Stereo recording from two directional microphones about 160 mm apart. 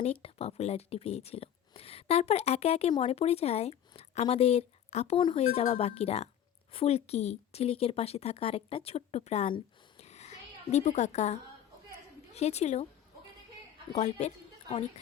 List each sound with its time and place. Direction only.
0.0 s a woman's voice: 40° left (ahead or behind)
10.0 s a sound: 45° left (ahead or behind)
12.3 s a woman's voice: 40° left (ahead or behind)
13.9 s a woman's voice: 45° left (ahead or behind)